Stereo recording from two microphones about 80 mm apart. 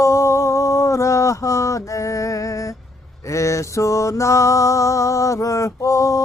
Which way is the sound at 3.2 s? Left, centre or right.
Left.